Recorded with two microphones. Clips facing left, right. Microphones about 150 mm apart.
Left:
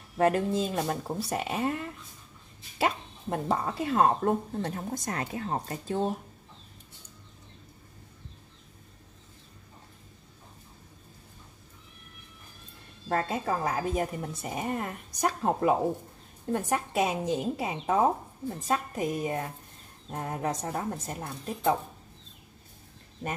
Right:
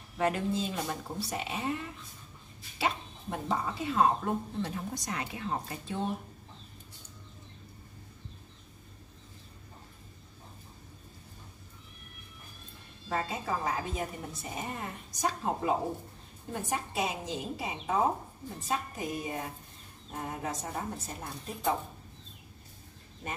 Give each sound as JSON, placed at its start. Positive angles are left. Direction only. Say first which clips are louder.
{"t": 0.2, "sound": "speech", "louder": "left 5 dB", "side_deg": 45}
{"t": 2.8, "sound": "speech", "louder": "left 4 dB", "side_deg": 50}
{"t": 13.1, "sound": "speech", "louder": "left 4 dB", "side_deg": 50}